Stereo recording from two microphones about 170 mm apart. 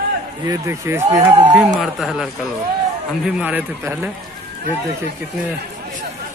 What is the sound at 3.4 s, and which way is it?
Speech, 10° right (ahead or behind).